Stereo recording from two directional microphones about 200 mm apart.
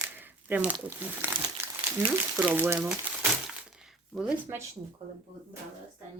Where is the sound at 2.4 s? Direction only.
10° right (ahead or behind).